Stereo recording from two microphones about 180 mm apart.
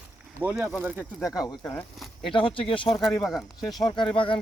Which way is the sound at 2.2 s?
30° left (ahead or behind).